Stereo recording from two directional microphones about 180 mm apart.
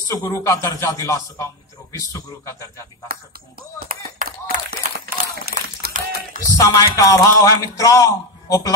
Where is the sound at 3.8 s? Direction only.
55° right (ahead or behind).